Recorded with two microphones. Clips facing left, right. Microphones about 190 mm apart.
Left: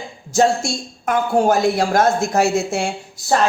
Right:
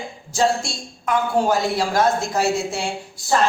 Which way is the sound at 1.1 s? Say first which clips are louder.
Left 3 dB; 50° left (ahead or behind).